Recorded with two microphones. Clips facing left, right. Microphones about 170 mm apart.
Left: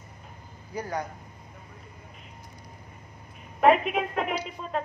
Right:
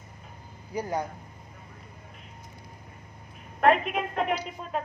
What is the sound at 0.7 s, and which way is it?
Speech, 20° right (ahead or behind).